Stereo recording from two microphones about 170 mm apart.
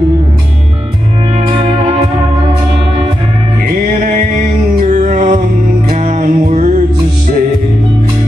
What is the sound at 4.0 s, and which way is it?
Music, 45° right (ahead or behind).